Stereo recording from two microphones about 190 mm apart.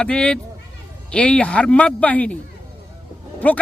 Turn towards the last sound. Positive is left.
turn(degrees=10)  # may be behind; listen again after turning